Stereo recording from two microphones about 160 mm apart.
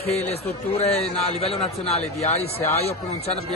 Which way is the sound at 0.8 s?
40° left (ahead or behind).